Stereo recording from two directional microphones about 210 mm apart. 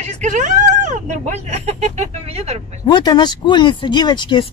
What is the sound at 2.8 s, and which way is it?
Speech, 20° left (ahead or behind).